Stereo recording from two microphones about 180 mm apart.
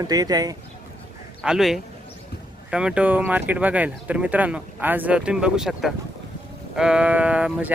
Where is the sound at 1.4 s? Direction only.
Centre (ahead or behind).